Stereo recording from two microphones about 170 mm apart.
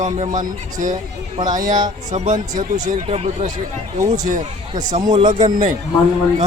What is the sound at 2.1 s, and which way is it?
Speech, 45° right (ahead or behind).